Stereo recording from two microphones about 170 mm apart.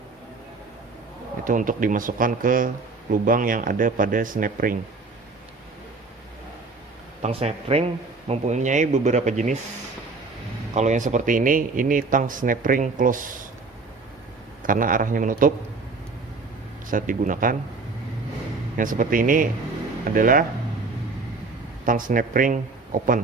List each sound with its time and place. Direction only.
1.5 s speech: 50° right (ahead or behind)
7.2 s speech: 35° right (ahead or behind)
10.8 s speech: 45° right (ahead or behind)
14.6 s speech: 55° right (ahead or behind)
16.9 s speech: 50° right (ahead or behind)
18.8 s speech: 55° right (ahead or behind)
21.8 s speech: 55° right (ahead or behind)